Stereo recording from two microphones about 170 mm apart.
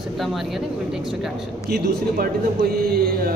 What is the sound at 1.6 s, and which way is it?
Speech, 60° right (ahead or behind).